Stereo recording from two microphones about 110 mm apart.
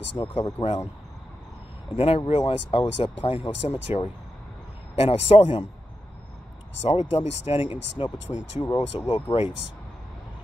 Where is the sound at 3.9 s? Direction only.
75° left (ahead or behind).